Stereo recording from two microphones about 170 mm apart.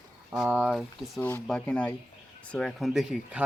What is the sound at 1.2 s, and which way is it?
Speech, 10° left (ahead or behind).